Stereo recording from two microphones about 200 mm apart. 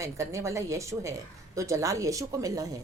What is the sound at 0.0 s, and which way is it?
A woman's voice, 15° right (ahead or behind).